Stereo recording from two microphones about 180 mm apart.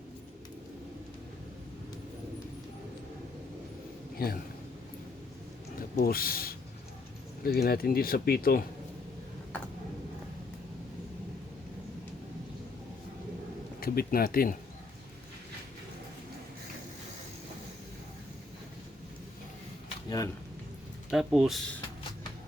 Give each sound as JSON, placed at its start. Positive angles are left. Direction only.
{"t": 4.2, "sound": "speech", "side_deg": 55}
{"t": 6.0, "sound": "speech", "side_deg": 55}
{"t": 13.7, "sound": "speech", "side_deg": 55}
{"t": 20.1, "sound": "a sound", "side_deg": 20}
{"t": 21.1, "sound": "speech", "side_deg": 0}